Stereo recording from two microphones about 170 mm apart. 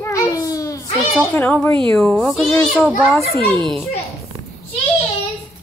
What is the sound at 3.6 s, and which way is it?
Speech, centre (ahead or behind).